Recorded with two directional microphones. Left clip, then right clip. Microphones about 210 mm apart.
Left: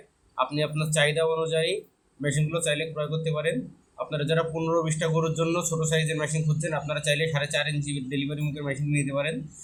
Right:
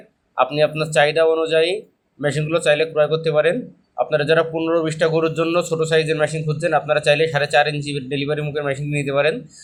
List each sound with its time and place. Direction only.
0.3 s speech: 20° right (ahead or behind)